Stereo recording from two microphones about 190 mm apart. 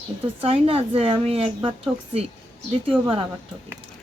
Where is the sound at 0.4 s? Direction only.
30° right (ahead or behind).